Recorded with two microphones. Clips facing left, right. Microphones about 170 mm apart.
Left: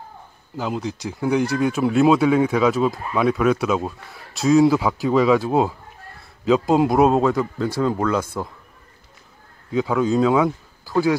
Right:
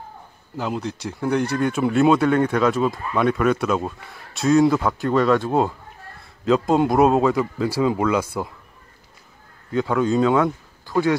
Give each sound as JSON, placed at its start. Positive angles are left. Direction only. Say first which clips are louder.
{"t": 0.6, "sound": "speech", "louder": "left 1 dB", "side_deg": 0}
{"t": 9.7, "sound": "speech", "louder": "even", "side_deg": 0}